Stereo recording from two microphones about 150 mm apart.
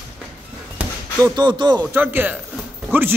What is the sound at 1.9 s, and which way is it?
Speech, 15° right (ahead or behind).